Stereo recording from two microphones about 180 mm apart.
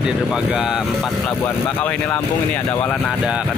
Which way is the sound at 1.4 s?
10° left (ahead or behind).